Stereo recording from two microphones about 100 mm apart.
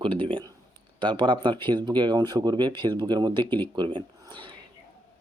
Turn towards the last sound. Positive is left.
turn(degrees=-50)  # may be behind; listen again after turning